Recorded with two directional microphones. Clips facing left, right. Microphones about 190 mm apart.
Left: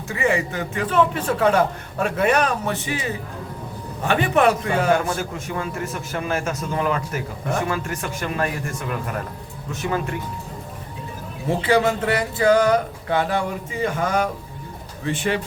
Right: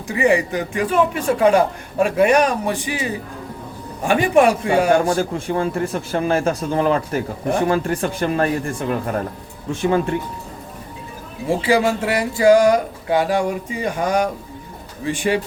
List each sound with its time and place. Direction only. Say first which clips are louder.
0.2 s a man's voice: right 5 dB; 15° right (ahead or behind)
4.0 s a man's voice: right 4 dB; 10° right (ahead or behind)
4.9 s a man's voice: right 4 dB; 30° right (ahead or behind)
11.4 s a man's voice: right 2 dB; 10° right (ahead or behind)